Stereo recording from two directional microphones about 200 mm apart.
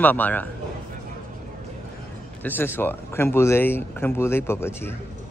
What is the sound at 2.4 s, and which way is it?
Speech, 10° left (ahead or behind).